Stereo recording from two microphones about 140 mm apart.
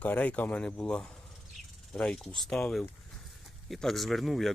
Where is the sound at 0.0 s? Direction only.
10° left (ahead or behind).